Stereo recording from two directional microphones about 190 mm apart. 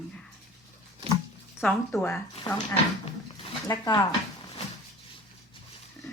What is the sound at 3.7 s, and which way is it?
Speech, 20° left (ahead or behind).